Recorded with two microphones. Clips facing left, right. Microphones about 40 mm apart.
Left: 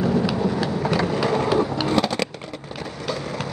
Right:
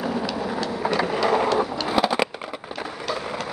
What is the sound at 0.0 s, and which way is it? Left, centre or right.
Vehicle, centre.